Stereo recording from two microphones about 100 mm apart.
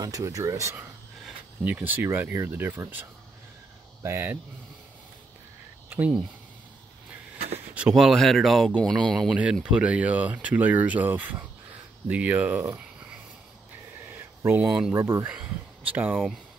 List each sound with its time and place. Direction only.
0.0 s speech: 35° right (ahead or behind)
1.6 s speech: 15° right (ahead or behind)
5.9 s a sound: 15° right (ahead or behind)
7.7 s speech: 5° right (ahead or behind)
9.3 s speech: 10° right (ahead or behind)
12.7 s a sound: 15° right (ahead or behind)
14.9 s speech: 30° right (ahead or behind)
15.2 s speech: 15° right (ahead or behind)